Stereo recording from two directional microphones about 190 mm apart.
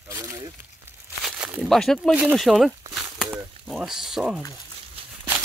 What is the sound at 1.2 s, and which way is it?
Speech, 5° right (ahead or behind).